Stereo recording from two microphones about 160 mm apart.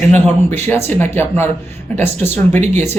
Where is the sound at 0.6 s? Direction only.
15° left (ahead or behind).